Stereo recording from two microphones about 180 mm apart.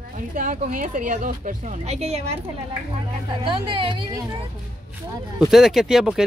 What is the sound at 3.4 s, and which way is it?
Speech, 30° right (ahead or behind).